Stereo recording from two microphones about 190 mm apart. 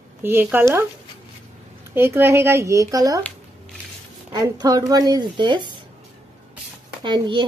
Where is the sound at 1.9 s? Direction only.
10° right (ahead or behind).